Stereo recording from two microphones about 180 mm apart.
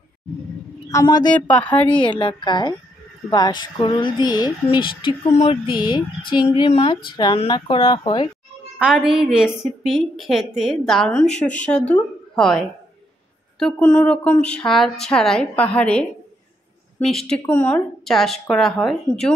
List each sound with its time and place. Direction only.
0.8 s speech: 20° left (ahead or behind)
1.3 s speech: 10° left (ahead or behind)
2.1 s speech: 25° left (ahead or behind)
8.7 s a woman's voice: 5° right (ahead or behind)
13.6 s a woman's voice: 5° left (ahead or behind)
17.2 s a woman's voice: 10° left (ahead or behind)